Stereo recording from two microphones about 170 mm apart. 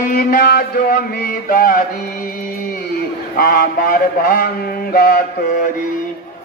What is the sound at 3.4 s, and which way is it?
Mantra, 60° left (ahead or behind).